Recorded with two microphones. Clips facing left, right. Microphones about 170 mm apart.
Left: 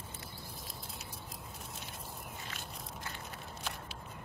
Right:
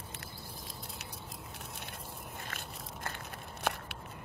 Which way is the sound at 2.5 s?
55° right (ahead or behind).